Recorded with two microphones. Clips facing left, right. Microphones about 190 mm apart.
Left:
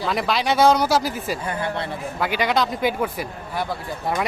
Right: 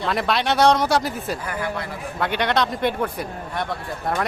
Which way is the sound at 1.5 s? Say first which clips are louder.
Left 1 dB; 25° left (ahead or behind).